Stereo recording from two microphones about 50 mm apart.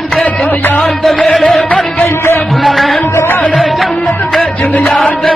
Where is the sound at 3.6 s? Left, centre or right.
Centre.